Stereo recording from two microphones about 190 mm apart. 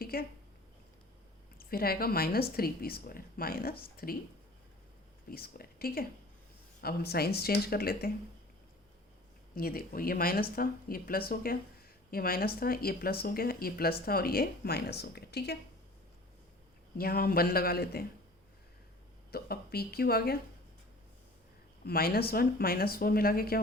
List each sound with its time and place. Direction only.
0.0 s a sound: 50° left (ahead or behind)
1.5 s speech: 50° left (ahead or behind)
5.3 s speech: 50° left (ahead or behind)
9.6 s a woman's voice: 50° left (ahead or behind)
17.0 s speech: 50° left (ahead or behind)
19.3 s speech: 55° left (ahead or behind)
21.8 s speech: 50° left (ahead or behind)